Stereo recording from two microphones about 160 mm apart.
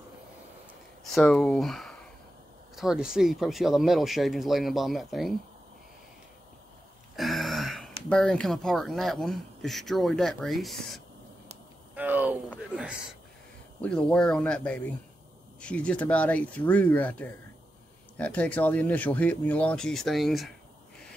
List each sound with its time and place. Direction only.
1.1 s speech: centre (ahead or behind)
7.2 s speech: centre (ahead or behind)
11.9 s a sound: 10° right (ahead or behind)
13.7 s speech: 5° left (ahead or behind)